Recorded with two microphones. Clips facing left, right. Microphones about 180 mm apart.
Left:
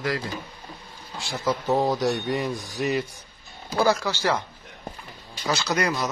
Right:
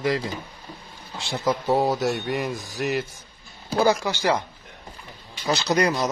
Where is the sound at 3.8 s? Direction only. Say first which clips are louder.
Right 1 dB; 15° right (ahead or behind).